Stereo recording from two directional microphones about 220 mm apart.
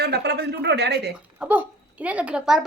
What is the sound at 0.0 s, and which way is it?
Speech, 50° right (ahead or behind).